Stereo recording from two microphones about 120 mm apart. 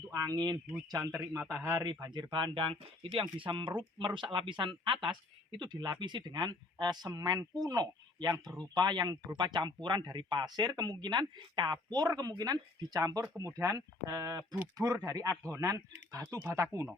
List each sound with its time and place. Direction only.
0.1 s speech: 30° right (ahead or behind)
1.8 s speech: 35° right (ahead or behind)